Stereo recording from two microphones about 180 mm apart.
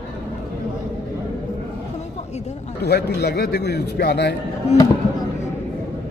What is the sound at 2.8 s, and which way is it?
A man's voice, 65° left (ahead or behind).